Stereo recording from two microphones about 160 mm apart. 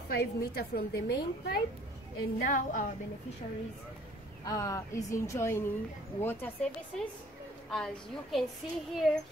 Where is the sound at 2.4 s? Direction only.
55° left (ahead or behind).